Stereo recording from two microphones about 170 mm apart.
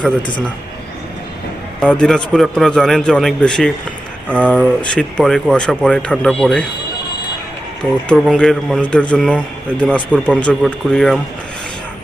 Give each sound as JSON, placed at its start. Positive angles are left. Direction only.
{"t": 0.2, "sound": "a man's voice", "side_deg": 25}
{"t": 1.8, "sound": "a man's voice", "side_deg": 5}
{"t": 8.0, "sound": "a man's voice", "side_deg": 0}